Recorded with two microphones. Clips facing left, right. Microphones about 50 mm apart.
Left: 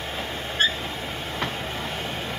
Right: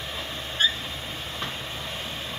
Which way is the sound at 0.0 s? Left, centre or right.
Left.